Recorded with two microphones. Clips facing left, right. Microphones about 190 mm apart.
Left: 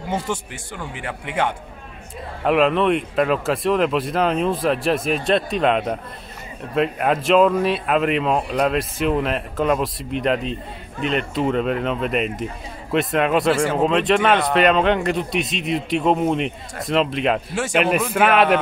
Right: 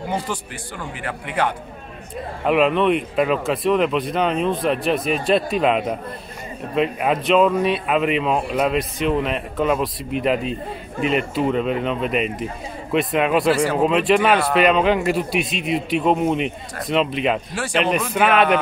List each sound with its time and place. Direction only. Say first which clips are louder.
0.9 s speech: even; 20° left (ahead or behind)
2.4 s a man's voice: even; centre (ahead or behind)